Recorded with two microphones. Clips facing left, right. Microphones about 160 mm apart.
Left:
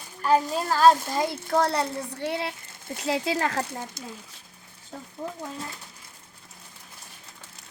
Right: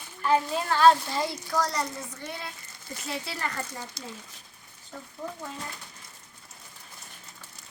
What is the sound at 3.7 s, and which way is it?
Speech, 50° left (ahead or behind).